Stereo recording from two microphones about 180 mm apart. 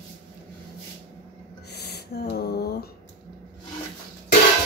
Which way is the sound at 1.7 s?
65° left (ahead or behind).